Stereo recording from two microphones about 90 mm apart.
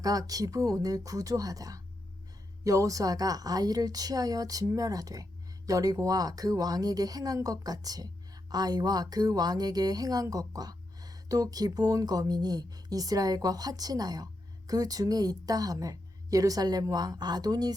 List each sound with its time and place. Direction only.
0.0 s a woman's voice: 40° right (ahead or behind)